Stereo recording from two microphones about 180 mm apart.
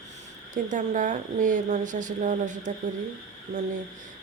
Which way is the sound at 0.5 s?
45° right (ahead or behind).